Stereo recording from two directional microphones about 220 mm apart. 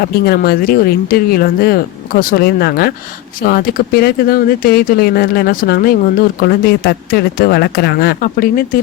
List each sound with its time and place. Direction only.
0.0 s speech: 45° left (ahead or behind)